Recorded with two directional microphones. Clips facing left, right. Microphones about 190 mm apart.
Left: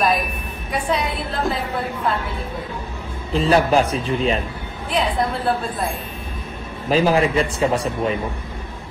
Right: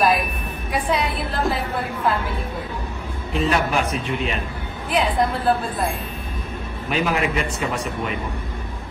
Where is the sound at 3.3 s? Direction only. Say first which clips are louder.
Left 5 dB; 35° left (ahead or behind).